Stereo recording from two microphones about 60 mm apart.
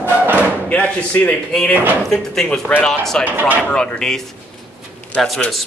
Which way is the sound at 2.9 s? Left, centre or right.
Centre.